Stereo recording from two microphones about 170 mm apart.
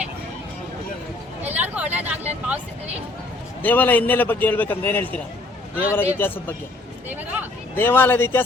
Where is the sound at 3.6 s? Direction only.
10° left (ahead or behind).